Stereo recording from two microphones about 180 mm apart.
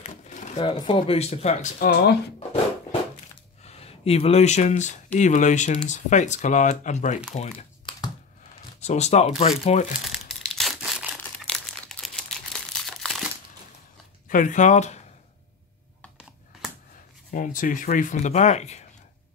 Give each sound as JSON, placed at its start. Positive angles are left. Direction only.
{"t": 0.0, "sound": "a sound", "side_deg": 40}
{"t": 0.6, "sound": "speech", "side_deg": 30}
{"t": 1.8, "sound": "speech", "side_deg": 55}
{"t": 3.6, "sound": "speech", "side_deg": 35}
{"t": 7.3, "sound": "crumpling", "side_deg": 35}
{"t": 8.8, "sound": "speech", "side_deg": 40}
{"t": 10.0, "sound": "crumpling", "side_deg": 0}
{"t": 14.3, "sound": "speech", "side_deg": 45}
{"t": 17.3, "sound": "speech", "side_deg": 45}